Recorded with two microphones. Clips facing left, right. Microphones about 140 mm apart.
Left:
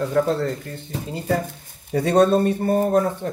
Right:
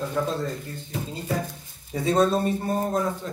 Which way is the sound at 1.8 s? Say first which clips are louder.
Left 5 dB; 65° left (ahead or behind).